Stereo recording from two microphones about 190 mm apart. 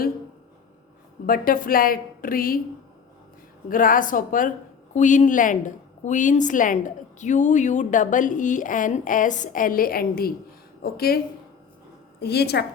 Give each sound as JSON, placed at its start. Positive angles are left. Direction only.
{"t": 1.3, "sound": "a woman's voice", "side_deg": 50}
{"t": 3.7, "sound": "a woman's voice", "side_deg": 45}
{"t": 12.2, "sound": "a woman's voice", "side_deg": 60}